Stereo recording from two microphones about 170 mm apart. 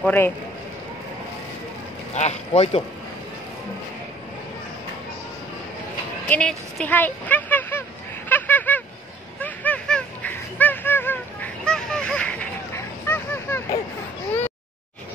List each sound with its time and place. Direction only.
0.0 s a man's voice: 10° left (ahead or behind)
2.1 s speech: 40° left (ahead or behind)
6.2 s speech: 10° left (ahead or behind)
8.3 s a sound: 10° left (ahead or behind)